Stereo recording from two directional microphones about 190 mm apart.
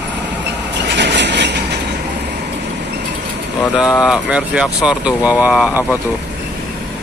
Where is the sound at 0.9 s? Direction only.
65° right (ahead or behind).